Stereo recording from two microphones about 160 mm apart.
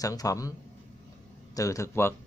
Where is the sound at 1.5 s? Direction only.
20° left (ahead or behind).